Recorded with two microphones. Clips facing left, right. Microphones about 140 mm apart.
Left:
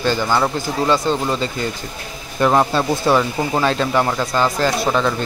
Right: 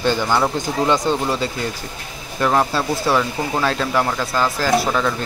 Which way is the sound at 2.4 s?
10° left (ahead or behind).